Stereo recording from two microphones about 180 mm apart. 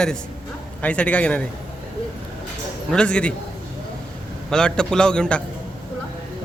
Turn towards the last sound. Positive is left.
turn(degrees=5)  # may be behind; listen again after turning